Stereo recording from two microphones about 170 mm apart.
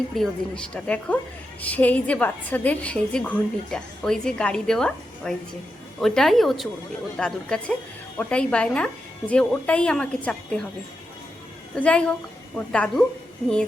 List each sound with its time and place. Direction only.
0.1 s a woman's voice: 5° left (ahead or behind)
11.8 s a woman's voice: 5° left (ahead or behind)